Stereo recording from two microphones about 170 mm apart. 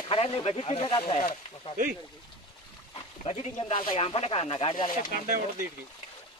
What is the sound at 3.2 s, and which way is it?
Speech, 40° left (ahead or behind).